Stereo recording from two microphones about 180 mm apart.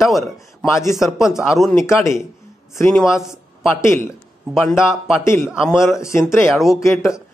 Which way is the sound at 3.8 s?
15° left (ahead or behind).